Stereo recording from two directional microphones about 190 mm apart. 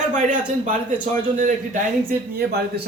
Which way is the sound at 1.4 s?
45° right (ahead or behind).